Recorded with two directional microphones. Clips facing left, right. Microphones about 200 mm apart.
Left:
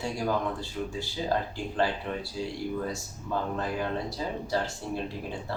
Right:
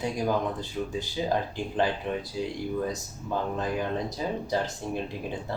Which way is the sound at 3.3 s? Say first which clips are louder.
Right 1 dB; 15° right (ahead or behind).